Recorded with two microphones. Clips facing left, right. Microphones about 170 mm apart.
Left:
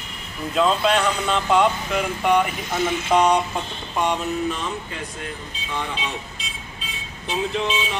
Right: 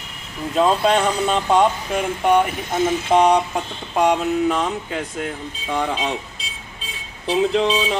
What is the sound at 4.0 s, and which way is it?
Speech, 80° right.